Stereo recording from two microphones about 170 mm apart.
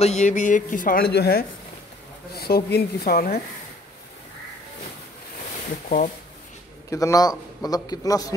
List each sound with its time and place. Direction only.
0.0 s a man's voice: 45° left (ahead or behind); by 3.3 s 60° left (ahead or behind)
6.9 s a man's voice: 20° left (ahead or behind)